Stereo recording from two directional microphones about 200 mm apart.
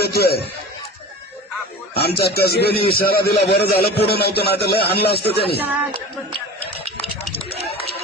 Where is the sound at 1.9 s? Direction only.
55° left (ahead or behind).